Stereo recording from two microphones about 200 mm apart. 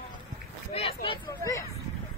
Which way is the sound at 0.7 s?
30° left (ahead or behind).